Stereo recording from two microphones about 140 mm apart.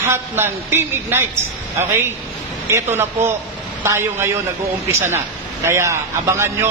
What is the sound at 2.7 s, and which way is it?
A man's voice, 20° right (ahead or behind).